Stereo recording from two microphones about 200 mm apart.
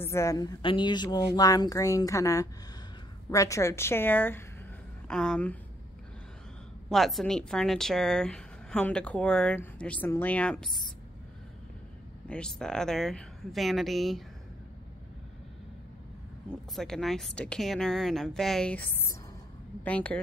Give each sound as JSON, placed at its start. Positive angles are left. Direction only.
{"t": 0.0, "sound": "a woman's voice", "side_deg": 15}
{"t": 6.9, "sound": "speech", "side_deg": 0}
{"t": 12.3, "sound": "speech", "side_deg": 5}
{"t": 16.4, "sound": "speech", "side_deg": 0}